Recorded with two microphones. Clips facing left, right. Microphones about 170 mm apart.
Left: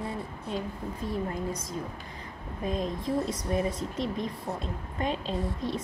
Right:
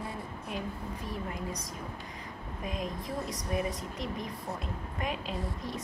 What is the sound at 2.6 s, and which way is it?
A woman's voice, 30° left (ahead or behind).